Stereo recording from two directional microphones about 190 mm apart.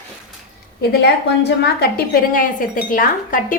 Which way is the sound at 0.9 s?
60° left (ahead or behind).